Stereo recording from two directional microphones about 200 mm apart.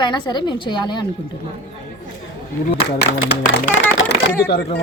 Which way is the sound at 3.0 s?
55° left (ahead or behind).